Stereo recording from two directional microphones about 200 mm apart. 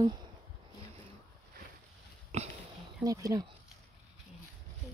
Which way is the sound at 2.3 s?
35° right (ahead or behind).